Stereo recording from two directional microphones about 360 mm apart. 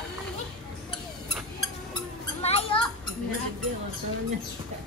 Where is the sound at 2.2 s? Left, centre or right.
Centre.